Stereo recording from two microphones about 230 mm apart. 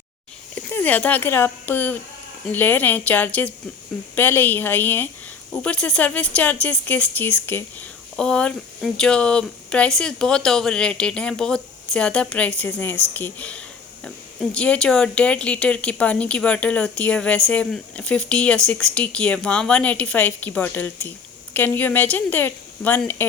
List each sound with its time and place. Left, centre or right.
0.5 s speech: centre